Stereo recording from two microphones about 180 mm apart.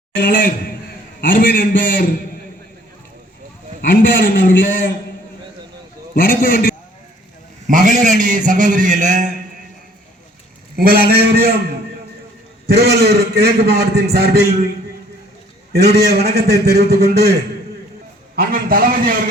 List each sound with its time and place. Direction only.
0.2 s a man's voice: 50° left (ahead or behind)
3.8 s a man's voice: 50° left (ahead or behind)
6.1 s a man's voice: 50° left (ahead or behind)
7.7 s a man's voice: 45° right (ahead or behind)
10.8 s a man's voice: 60° right (ahead or behind)
12.6 s a man's voice: 60° right (ahead or behind)
15.7 s a man's voice: 65° right (ahead or behind)
18.3 s a man's voice: 55° right (ahead or behind)